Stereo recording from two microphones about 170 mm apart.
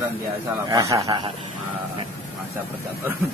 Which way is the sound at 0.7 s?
20° right (ahead or behind).